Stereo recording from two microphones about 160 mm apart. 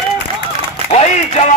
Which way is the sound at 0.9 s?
40° left (ahead or behind).